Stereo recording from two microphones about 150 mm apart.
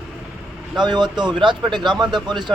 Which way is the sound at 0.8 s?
30° right (ahead or behind).